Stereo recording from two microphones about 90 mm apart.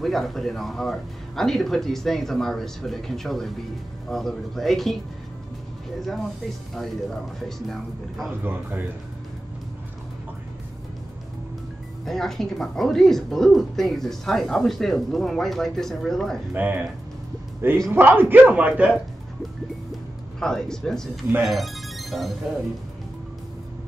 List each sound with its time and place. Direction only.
0.0 s a woman's voice: centre (ahead or behind)
6.7 s a woman's voice: 5° left (ahead or behind)
8.5 s speech: 20° right (ahead or behind)
12.0 s a woman's voice: 5° left (ahead or behind)
16.5 s a man's voice: 20° right (ahead or behind)
20.3 s speech: 5° left (ahead or behind)